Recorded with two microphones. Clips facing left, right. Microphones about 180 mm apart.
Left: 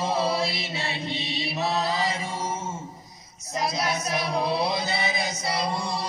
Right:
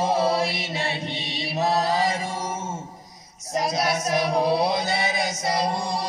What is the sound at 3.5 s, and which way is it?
Chant, 45° right (ahead or behind).